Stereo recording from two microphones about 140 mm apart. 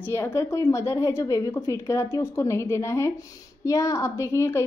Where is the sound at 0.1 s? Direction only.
20° left (ahead or behind).